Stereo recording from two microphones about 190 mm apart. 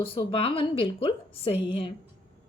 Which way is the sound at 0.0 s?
30° left (ahead or behind).